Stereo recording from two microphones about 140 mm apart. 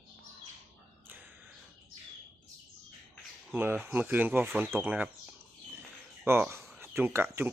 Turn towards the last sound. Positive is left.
turn(degrees=-15)  # may be behind; listen again after turning